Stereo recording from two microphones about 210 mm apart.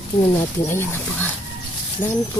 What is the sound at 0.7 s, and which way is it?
Speech, 10° left (ahead or behind).